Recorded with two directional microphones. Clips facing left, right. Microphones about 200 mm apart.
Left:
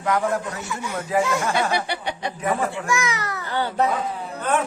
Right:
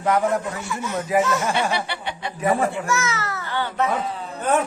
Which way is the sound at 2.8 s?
15° left (ahead or behind).